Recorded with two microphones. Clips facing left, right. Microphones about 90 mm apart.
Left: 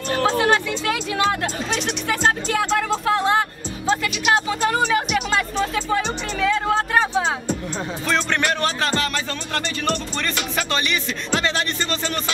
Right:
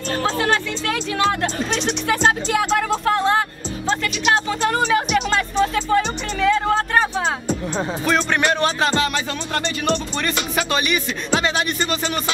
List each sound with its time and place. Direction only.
0.1 s speech: 15° left (ahead or behind)
2.0 s speech: 5° right (ahead or behind)
3.1 s music: 5° left (ahead or behind)
8.4 s speech: 20° right (ahead or behind)